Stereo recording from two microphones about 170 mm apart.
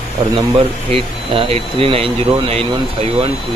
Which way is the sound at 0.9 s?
35° right (ahead or behind).